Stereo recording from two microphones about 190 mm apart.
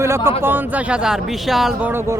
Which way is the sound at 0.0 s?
15° right (ahead or behind).